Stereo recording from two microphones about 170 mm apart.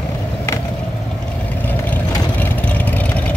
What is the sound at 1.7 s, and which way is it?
Vehicle, 10° left (ahead or behind).